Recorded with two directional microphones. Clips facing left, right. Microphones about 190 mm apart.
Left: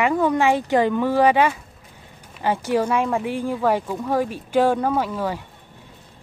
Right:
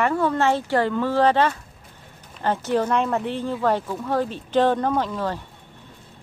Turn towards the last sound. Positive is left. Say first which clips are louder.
# left 1 dB
turn(degrees=10)  # may be behind; listen again after turning